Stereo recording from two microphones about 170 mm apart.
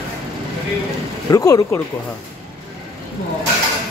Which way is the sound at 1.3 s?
20° left (ahead or behind).